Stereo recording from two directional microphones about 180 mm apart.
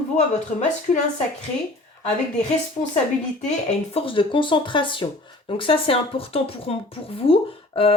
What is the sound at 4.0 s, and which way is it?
Speech, 30° left (ahead or behind).